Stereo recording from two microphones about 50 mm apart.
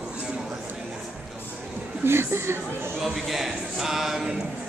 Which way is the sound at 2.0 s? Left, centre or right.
Right.